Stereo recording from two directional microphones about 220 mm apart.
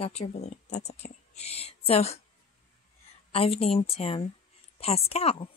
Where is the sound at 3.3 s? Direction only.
25° left (ahead or behind).